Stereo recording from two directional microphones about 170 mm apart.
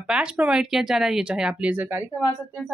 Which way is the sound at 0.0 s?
5° right (ahead or behind).